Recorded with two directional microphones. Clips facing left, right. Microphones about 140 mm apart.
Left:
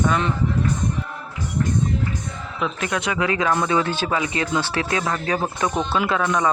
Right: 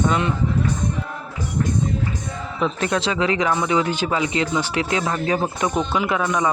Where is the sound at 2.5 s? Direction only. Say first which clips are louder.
Right 3 dB; 35° right (ahead or behind).